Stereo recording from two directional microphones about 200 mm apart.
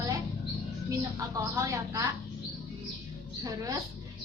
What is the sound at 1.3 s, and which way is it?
Speech, 15° right (ahead or behind).